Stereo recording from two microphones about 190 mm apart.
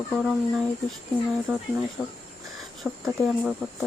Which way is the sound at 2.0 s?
5° right (ahead or behind).